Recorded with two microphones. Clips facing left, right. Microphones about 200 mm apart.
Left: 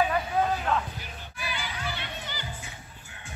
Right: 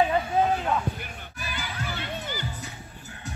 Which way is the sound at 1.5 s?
45° right (ahead or behind).